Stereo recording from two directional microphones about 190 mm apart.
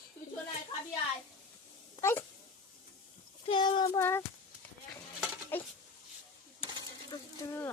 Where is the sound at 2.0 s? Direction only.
15° left (ahead or behind).